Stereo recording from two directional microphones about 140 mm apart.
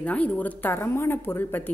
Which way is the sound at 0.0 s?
10° left (ahead or behind).